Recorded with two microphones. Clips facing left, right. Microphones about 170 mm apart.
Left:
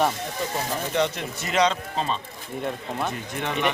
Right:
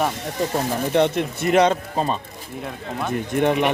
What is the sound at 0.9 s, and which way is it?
Speech, 55° right (ahead or behind).